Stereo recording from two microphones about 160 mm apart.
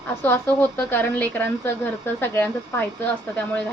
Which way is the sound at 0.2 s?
10° left (ahead or behind).